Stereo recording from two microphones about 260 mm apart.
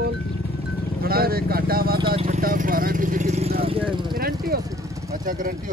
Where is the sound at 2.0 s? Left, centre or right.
Right.